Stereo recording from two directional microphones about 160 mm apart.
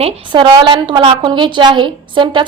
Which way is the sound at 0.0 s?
30° right (ahead or behind).